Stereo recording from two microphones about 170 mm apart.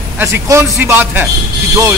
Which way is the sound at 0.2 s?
15° right (ahead or behind).